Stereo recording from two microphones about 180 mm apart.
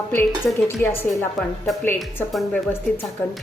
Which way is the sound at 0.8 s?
10° left (ahead or behind).